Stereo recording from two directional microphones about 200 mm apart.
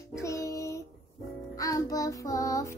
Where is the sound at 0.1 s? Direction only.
15° left (ahead or behind).